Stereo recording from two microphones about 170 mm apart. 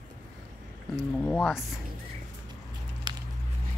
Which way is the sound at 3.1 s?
25° right (ahead or behind).